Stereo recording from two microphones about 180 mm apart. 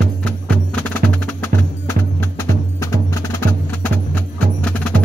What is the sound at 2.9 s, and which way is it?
Music, 15° left (ahead or behind).